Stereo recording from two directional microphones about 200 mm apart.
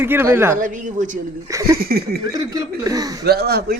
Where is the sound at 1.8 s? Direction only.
50° right (ahead or behind).